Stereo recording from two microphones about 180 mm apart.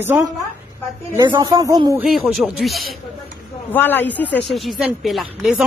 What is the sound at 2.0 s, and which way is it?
Speech, centre (ahead or behind).